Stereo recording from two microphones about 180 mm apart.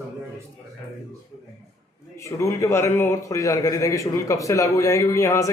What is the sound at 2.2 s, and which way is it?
A man's voice, 15° left (ahead or behind).